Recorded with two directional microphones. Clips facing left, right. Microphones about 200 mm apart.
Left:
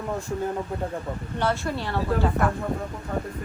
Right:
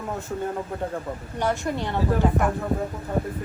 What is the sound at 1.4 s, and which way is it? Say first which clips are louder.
Speech: right 1 dB; 15° right (ahead or behind).